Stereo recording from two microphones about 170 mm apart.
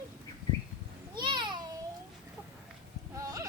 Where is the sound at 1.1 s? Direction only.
25° right (ahead or behind).